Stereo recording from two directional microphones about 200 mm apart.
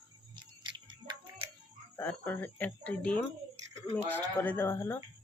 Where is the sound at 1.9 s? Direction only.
10° left (ahead or behind).